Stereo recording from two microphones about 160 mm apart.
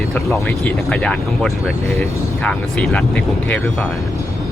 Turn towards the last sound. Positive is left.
turn(degrees=10)  # may be behind; listen again after turning